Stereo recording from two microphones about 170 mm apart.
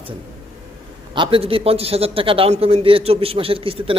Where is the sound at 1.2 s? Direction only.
30° right (ahead or behind).